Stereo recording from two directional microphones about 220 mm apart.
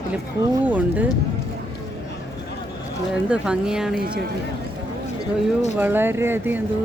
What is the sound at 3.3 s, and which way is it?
Speech, 5° right (ahead or behind).